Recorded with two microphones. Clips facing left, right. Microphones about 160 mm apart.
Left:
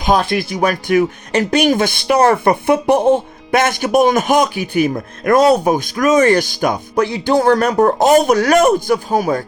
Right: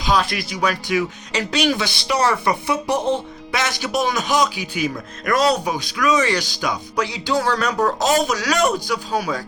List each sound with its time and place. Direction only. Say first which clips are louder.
0.0 s speech: left 5 dB; 50° left (ahead or behind)